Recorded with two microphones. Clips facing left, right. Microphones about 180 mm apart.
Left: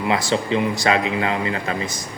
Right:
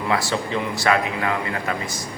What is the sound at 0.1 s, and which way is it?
Speech, 20° left (ahead or behind).